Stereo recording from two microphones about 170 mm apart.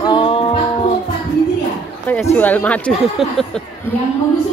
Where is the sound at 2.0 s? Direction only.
10° left (ahead or behind).